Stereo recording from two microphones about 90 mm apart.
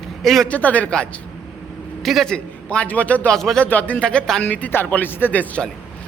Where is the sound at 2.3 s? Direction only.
15° left (ahead or behind).